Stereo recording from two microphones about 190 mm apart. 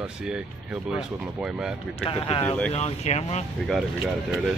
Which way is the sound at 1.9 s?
30° left (ahead or behind).